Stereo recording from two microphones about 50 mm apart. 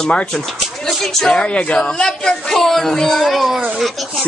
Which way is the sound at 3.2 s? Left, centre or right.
Centre.